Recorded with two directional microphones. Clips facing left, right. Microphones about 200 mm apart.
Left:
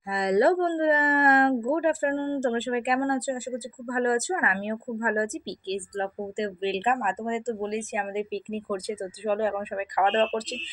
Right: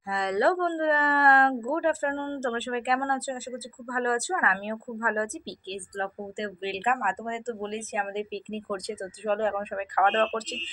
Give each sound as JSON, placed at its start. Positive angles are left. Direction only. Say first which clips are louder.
{"t": 0.1, "sound": "speech", "louder": "left 3 dB", "side_deg": 20}